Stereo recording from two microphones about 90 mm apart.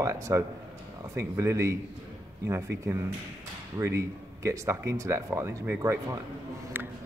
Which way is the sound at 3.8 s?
30° right (ahead or behind).